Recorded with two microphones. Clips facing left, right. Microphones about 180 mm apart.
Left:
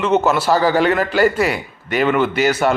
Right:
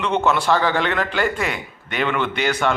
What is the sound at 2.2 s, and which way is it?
Speech, 5° left (ahead or behind).